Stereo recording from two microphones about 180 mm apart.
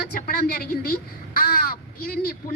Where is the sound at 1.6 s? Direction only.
55° left (ahead or behind).